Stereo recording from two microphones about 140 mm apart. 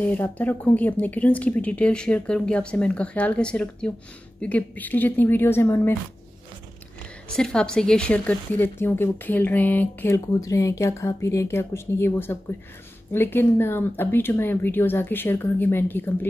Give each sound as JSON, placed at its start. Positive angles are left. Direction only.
{"t": 0.0, "sound": "speech", "side_deg": 10}
{"t": 7.3, "sound": "speech", "side_deg": 5}